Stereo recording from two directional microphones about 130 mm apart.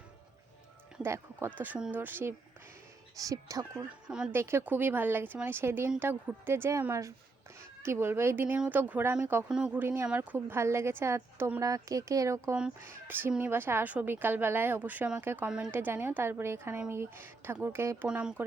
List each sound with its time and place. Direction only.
1.0 s speech: 20° right (ahead or behind)
3.2 s speech: 25° right (ahead or behind)
4.3 s speech: 15° right (ahead or behind)
11.6 s speech: 25° right (ahead or behind)
12.5 s speech: 10° right (ahead or behind)
15.7 s speech: 15° right (ahead or behind)